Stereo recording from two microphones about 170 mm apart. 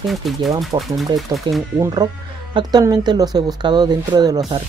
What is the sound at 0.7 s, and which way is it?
Speech, 25° right (ahead or behind).